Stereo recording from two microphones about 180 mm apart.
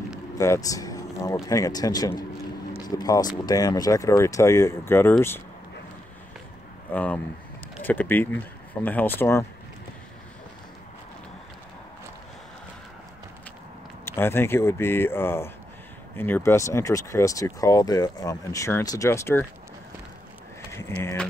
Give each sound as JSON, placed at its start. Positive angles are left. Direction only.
{"t": 0.4, "sound": "speech", "side_deg": 20}
{"t": 6.9, "sound": "speech", "side_deg": 10}
{"t": 14.0, "sound": "speech", "side_deg": 15}
{"t": 20.7, "sound": "speech", "side_deg": 15}